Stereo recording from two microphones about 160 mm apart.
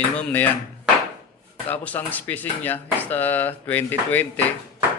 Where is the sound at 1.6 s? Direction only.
10° left (ahead or behind).